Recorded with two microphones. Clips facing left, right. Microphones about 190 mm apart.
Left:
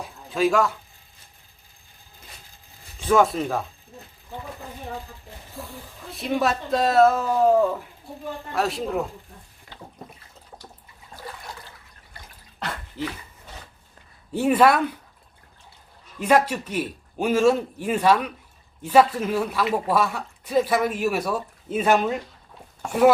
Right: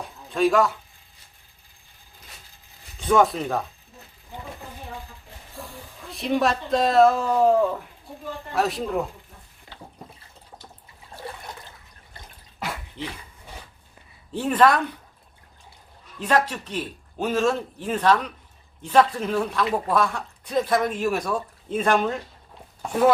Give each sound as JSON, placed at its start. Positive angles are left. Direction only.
{"t": 0.0, "sound": "a sound", "side_deg": 0}
{"t": 3.0, "sound": "speech", "side_deg": 0}
{"t": 5.6, "sound": "speech", "side_deg": 0}
{"t": 11.2, "sound": "water", "side_deg": -30}
{"t": 12.5, "sound": "bathtub", "side_deg": -10}
{"t": 14.3, "sound": "speech", "side_deg": 10}
{"t": 16.2, "sound": "speech", "side_deg": 10}